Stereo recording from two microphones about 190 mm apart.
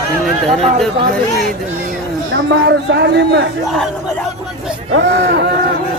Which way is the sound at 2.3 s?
65° right (ahead or behind).